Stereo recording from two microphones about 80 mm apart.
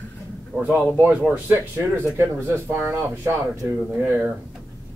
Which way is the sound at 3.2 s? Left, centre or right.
Right.